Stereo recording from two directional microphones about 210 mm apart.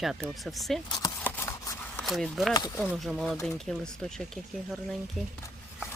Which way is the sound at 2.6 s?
20° left (ahead or behind).